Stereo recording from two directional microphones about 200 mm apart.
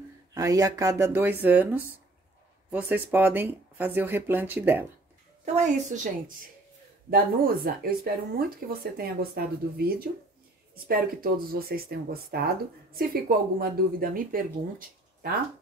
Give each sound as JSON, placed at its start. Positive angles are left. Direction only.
{"t": 0.3, "sound": "speech", "side_deg": -15}
{"t": 5.4, "sound": "a woman's voice", "side_deg": -35}
{"t": 7.1, "sound": "speech", "side_deg": -45}
{"t": 11.7, "sound": "speech", "side_deg": -50}